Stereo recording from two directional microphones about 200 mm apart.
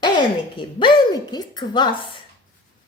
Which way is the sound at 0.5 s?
20° left (ahead or behind).